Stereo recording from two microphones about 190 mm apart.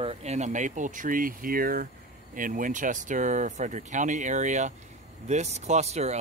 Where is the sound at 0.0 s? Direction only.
35° right (ahead or behind).